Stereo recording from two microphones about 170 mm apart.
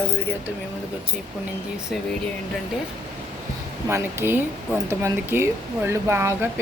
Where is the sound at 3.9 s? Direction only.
15° right (ahead or behind).